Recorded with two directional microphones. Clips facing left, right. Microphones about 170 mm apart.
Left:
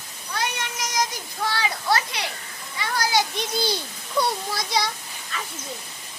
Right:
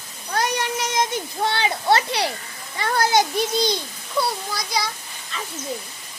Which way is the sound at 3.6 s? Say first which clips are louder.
Right 3 dB; 10° left (ahead or behind).